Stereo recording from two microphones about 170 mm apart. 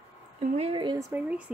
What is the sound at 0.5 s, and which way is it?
Speech, 35° right (ahead or behind).